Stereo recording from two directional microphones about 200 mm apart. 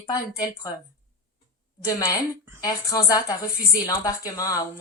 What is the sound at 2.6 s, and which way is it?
A woman's voice, 20° left (ahead or behind).